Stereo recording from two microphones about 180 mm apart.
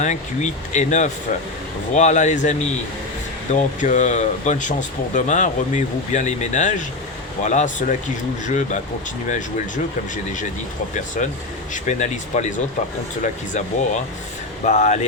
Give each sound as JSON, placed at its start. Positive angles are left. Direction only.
{"t": 0.0, "sound": "speech", "side_deg": 40}
{"t": 10.9, "sound": "speech", "side_deg": 45}